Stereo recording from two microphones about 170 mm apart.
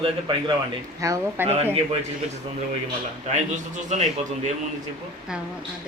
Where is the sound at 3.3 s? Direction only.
45° right (ahead or behind).